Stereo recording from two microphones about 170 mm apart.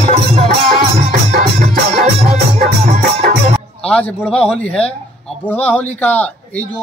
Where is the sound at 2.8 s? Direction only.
40° right (ahead or behind).